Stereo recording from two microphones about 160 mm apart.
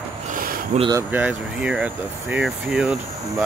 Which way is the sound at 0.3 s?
65° right (ahead or behind).